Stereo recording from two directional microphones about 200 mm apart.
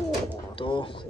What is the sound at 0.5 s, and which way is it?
Pigeon, 25° left (ahead or behind).